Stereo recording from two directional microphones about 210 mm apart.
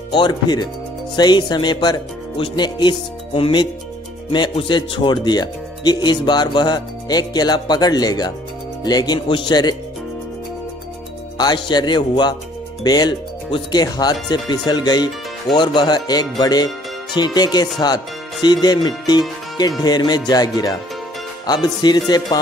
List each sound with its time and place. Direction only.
0.1 s speech: 20° left (ahead or behind)
11.3 s speech: 20° left (ahead or behind)